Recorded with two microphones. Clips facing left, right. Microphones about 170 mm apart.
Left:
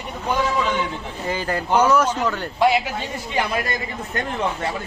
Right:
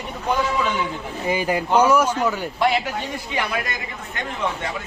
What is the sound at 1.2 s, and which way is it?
Speech, 15° right (ahead or behind).